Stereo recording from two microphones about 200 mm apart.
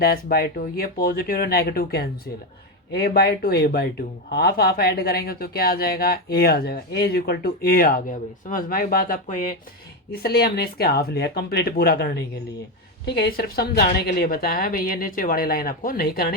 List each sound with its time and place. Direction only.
0.0 s speech: 50° left (ahead or behind)